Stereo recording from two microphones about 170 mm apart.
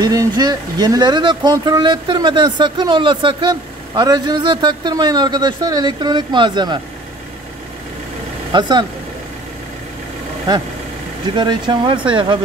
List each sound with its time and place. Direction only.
0.0 s speech: 20° right (ahead or behind)
8.5 s speech: 25° right (ahead or behind)
11.3 s speech: 25° right (ahead or behind)